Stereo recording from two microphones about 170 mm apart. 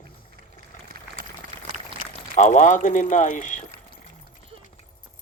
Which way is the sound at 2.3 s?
45° left (ahead or behind).